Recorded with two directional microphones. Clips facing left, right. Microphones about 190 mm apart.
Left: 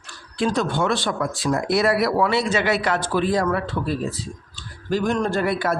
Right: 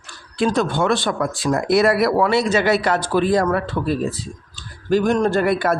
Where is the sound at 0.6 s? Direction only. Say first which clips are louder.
Right 3 dB; 55° right (ahead or behind).